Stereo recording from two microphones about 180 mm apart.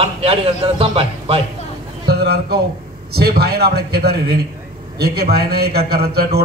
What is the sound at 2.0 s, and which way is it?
A man's voice, 65° right (ahead or behind).